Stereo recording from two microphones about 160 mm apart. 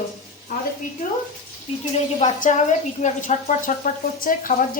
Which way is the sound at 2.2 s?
50° left (ahead or behind).